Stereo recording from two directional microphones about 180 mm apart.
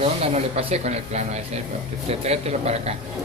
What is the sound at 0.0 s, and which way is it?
Speech, 35° right (ahead or behind).